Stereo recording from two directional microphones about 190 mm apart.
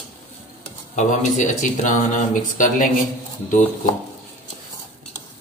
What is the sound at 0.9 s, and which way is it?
Speech, 40° left (ahead or behind).